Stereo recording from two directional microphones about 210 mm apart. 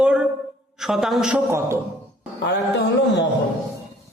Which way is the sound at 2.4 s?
55° left (ahead or behind).